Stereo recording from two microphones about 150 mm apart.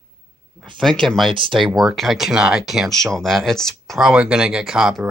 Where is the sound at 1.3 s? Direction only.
35° right (ahead or behind).